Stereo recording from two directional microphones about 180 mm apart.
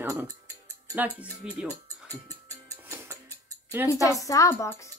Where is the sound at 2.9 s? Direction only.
15° right (ahead or behind).